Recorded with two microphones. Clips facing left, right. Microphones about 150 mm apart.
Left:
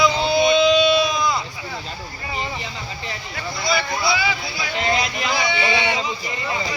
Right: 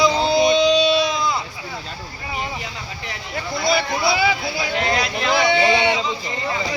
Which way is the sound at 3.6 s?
55° right (ahead or behind).